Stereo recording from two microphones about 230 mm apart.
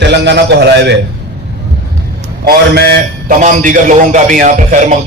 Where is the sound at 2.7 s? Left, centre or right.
Right.